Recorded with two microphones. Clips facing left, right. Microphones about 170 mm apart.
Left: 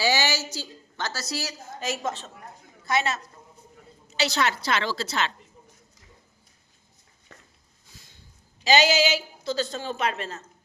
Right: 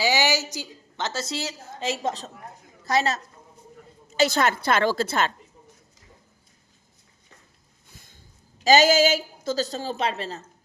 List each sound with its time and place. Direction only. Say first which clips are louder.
0.0 s a woman's voice: right 2 dB; 15° right (ahead or behind); by 3.2 s 40° right (ahead or behind)
4.2 s a woman's voice: right 4 dB; 50° right (ahead or behind)
7.9 s a sound: right 1 dB; 55° right (ahead or behind)
8.6 s a woman's voice: right 4 dB; 45° right (ahead or behind)